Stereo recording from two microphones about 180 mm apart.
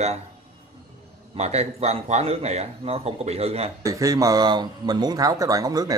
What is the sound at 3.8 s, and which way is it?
Speech, 20° right (ahead or behind).